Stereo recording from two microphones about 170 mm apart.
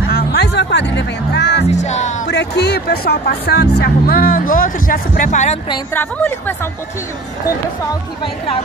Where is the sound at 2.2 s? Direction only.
85° left; by 5.6 s 45° left (ahead or behind).